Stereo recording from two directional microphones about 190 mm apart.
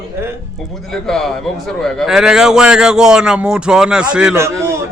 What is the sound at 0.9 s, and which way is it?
A man's voice, centre (ahead or behind).